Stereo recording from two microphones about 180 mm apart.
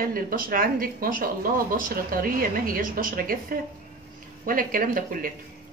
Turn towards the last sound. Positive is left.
turn(degrees=-50)  # may be behind; listen again after turning